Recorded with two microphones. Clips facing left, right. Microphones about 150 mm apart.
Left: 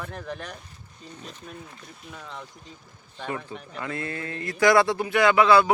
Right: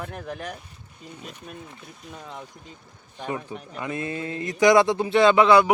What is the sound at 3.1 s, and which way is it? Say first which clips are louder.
Speech: right 2 dB; 15° right (ahead or behind).